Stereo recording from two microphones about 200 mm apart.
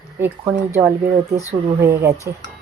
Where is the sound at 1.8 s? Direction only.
15° right (ahead or behind).